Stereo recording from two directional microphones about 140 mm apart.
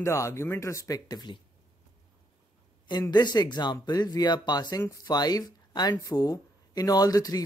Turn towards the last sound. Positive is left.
turn(degrees=25)  # may be behind; listen again after turning